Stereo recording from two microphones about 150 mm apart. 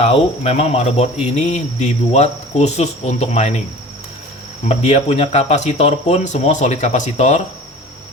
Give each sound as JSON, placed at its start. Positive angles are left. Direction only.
{"t": 0.0, "sound": "speech", "side_deg": 40}
{"t": 4.7, "sound": "speech", "side_deg": 45}